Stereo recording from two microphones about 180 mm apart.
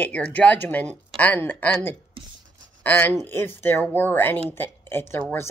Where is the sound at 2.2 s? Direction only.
30° right (ahead or behind).